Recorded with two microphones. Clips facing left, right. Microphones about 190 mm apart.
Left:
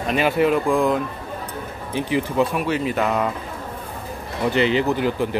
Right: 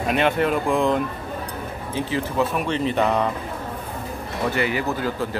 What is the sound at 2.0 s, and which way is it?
Speech, 15° left (ahead or behind).